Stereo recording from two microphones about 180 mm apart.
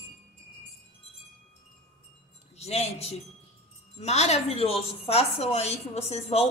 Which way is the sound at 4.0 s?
40° left (ahead or behind).